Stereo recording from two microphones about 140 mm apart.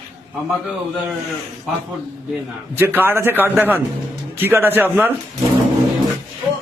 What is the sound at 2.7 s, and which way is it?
A man's voice, 15° right (ahead or behind).